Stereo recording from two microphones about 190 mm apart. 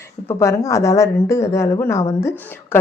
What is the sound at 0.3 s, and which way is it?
A woman's voice, 15° left (ahead or behind).